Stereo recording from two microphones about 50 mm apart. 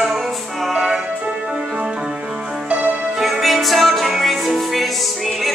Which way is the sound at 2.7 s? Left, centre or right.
Right.